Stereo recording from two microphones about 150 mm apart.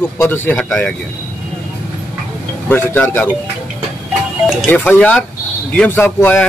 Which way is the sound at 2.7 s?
15° left (ahead or behind).